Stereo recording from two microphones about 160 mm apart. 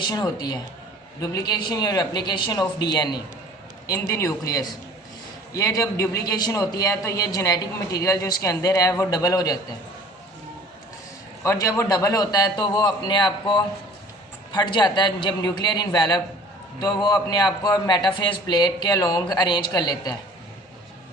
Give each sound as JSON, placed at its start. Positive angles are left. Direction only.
{"t": 0.1, "sound": "a man's voice", "side_deg": 25}
{"t": 11.4, "sound": "a man's voice", "side_deg": 20}